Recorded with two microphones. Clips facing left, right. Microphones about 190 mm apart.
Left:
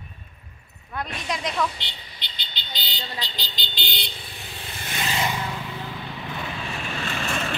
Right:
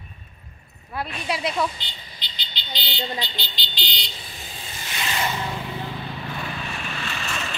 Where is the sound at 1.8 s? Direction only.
65° left (ahead or behind).